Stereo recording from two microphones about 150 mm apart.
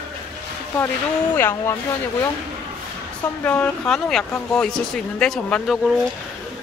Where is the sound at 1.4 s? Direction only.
15° left (ahead or behind).